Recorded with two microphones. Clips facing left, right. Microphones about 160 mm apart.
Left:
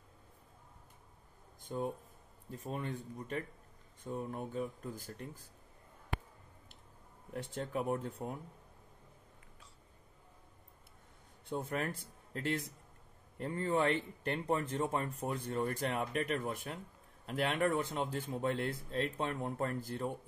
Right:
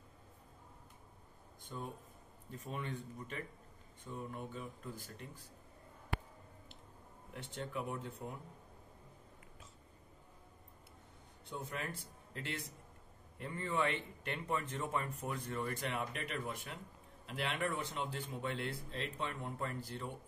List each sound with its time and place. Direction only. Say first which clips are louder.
2.7 s a man's voice: left 3 dB; 45° left (ahead or behind)
7.3 s a man's voice: left 5 dB; 45° left (ahead or behind)
11.5 s a man's voice: left 6 dB; 45° left (ahead or behind)